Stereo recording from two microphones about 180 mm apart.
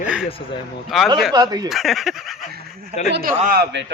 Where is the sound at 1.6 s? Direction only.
Centre (ahead or behind).